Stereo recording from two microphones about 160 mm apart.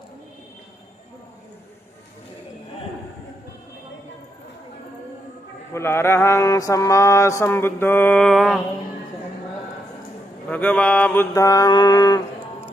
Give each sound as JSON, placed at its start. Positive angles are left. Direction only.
{"t": 5.7, "sound": "mantra", "side_deg": 15}
{"t": 10.5, "sound": "mantra", "side_deg": 10}